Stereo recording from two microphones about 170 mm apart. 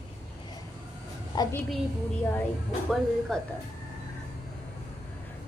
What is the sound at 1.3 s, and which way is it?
Speech, 20° left (ahead or behind).